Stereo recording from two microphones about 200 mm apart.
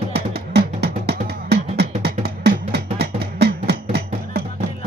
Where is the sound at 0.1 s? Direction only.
55° right (ahead or behind).